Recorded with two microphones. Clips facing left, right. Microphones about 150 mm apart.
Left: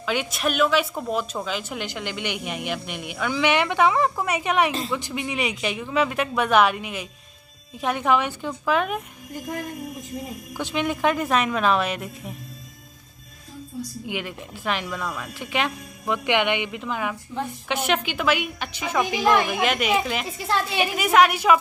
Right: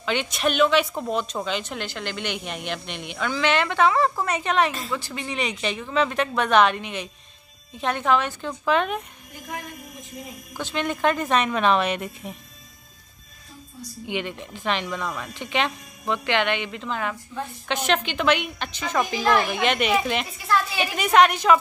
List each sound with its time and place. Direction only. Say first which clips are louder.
0.0 s a woman's voice: right 1 dB; 5° left (ahead or behind)
10.6 s a woman's voice: left 1 dB; 10° left (ahead or behind)
14.0 s a woman's voice: right 2 dB; 5° left (ahead or behind)
20.4 s a woman's voice: right 1 dB; 25° left (ahead or behind)
20.8 s a woman's voice: even; 5° left (ahead or behind)